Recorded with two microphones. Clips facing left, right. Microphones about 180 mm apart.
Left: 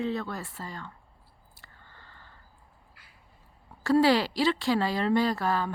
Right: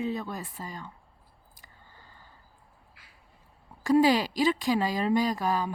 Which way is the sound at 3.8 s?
15° right (ahead or behind).